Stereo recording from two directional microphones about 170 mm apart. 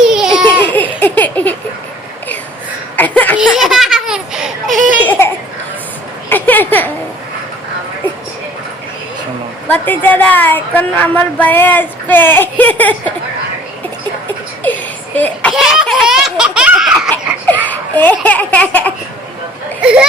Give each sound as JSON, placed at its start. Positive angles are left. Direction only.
{"t": 0.1, "sound": "babbling", "side_deg": -5}
{"t": 0.4, "sound": "laughter", "side_deg": 10}
{"t": 2.9, "sound": "a sound", "side_deg": 10}
{"t": 3.3, "sound": "baby laughter", "side_deg": -5}
{"t": 5.0, "sound": "laughter", "side_deg": 15}
{"t": 6.2, "sound": "a sound", "side_deg": 10}
{"t": 9.6, "sound": "speech", "side_deg": 10}
{"t": 14.6, "sound": "speech", "side_deg": 10}
{"t": 17.7, "sound": "speech", "side_deg": 10}
{"t": 19.8, "sound": "speech", "side_deg": -5}